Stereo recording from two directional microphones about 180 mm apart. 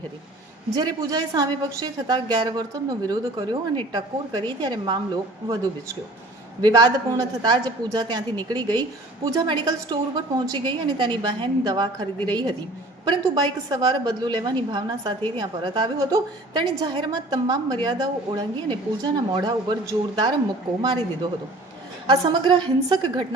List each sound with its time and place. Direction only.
0.8 s a woman's voice: 20° right (ahead or behind)
6.6 s a woman's voice: 20° right (ahead or behind)